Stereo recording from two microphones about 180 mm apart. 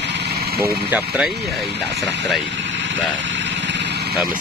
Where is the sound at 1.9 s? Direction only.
70° right (ahead or behind).